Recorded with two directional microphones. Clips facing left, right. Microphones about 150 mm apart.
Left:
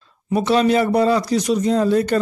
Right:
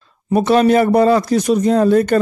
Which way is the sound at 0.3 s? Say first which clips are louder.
Right 4 dB; 55° right (ahead or behind).